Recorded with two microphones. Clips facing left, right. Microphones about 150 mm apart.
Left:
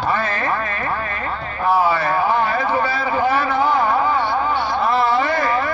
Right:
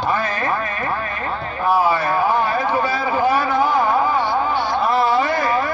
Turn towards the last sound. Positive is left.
turn(degrees=-20)  # may be behind; listen again after turning